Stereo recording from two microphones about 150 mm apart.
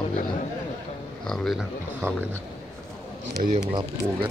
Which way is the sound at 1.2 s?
Centre (ahead or behind).